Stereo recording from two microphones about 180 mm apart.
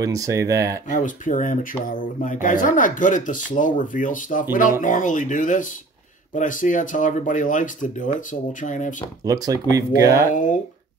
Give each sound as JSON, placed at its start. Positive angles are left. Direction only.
{"t": 0.0, "sound": "speech", "side_deg": -20}
{"t": 0.8, "sound": "speech", "side_deg": 45}
{"t": 9.2, "sound": "speech", "side_deg": -20}
{"t": 10.3, "sound": "speech", "side_deg": 45}